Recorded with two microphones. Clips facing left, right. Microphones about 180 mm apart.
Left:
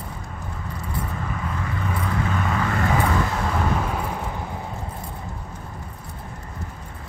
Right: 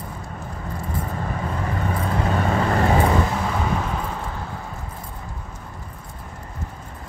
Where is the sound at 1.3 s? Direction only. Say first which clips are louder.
Right 3 dB; 35° right (ahead or behind).